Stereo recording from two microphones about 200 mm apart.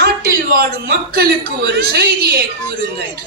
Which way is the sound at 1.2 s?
55° right (ahead or behind).